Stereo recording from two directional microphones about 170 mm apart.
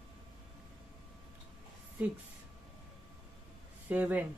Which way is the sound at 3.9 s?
10° right (ahead or behind).